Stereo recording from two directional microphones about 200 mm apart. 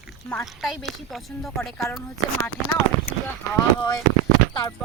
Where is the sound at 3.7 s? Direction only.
20° left (ahead or behind).